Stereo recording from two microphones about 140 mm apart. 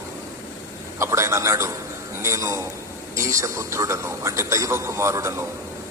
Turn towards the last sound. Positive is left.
turn(degrees=-20)  # may be behind; listen again after turning